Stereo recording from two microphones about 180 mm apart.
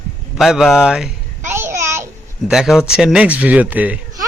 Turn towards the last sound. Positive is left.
turn(degrees=-10)  # may be behind; listen again after turning